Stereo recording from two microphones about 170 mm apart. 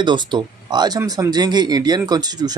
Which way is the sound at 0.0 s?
25° right (ahead or behind).